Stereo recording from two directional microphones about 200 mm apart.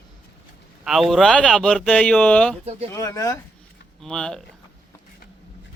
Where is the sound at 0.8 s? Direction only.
Centre (ahead or behind).